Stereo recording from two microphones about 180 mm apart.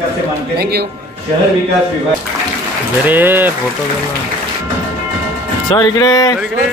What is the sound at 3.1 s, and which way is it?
Speech, 10° right (ahead or behind).